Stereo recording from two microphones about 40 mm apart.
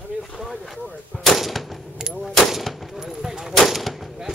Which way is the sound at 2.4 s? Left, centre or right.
Centre.